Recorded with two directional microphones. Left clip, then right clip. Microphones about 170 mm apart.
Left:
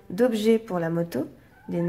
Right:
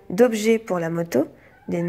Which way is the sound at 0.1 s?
35° right (ahead or behind).